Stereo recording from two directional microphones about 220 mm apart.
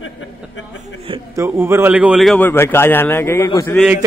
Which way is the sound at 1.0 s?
20° right (ahead or behind).